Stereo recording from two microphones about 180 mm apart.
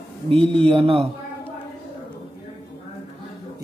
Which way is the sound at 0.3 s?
30° right (ahead or behind).